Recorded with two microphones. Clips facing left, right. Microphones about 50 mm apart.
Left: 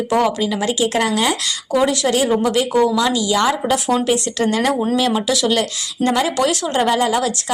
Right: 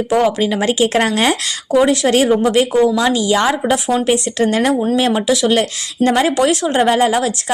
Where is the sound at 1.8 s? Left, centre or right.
Right.